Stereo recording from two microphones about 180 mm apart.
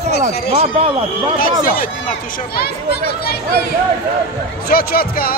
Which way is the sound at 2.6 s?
60° left (ahead or behind).